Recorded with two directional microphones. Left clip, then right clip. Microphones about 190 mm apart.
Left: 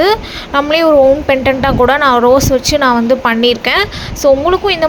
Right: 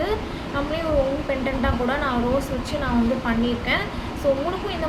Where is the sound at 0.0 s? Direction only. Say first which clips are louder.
Left 14 dB; 55° left (ahead or behind).